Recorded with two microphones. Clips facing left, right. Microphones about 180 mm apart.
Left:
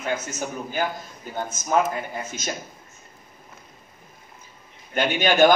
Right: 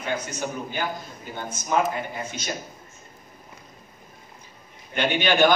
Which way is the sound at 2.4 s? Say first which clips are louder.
Left 2 dB; 45° left (ahead or behind).